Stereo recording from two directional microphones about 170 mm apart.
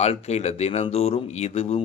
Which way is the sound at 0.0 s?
40° left (ahead or behind).